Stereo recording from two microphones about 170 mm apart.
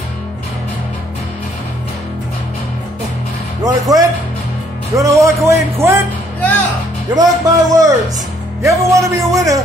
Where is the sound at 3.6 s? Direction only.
20° right (ahead or behind).